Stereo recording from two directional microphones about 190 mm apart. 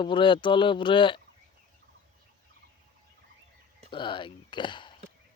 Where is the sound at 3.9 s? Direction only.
25° left (ahead or behind).